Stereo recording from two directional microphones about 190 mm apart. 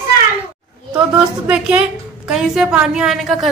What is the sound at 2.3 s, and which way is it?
A woman's voice, 5° right (ahead or behind).